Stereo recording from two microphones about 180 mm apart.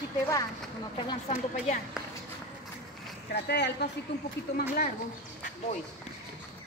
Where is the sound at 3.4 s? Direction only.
65° left (ahead or behind).